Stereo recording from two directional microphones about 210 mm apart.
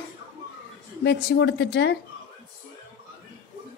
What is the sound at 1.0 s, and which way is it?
Speech, 55° left (ahead or behind).